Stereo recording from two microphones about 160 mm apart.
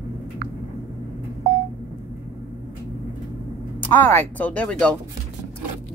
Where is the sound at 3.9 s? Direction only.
10° left (ahead or behind).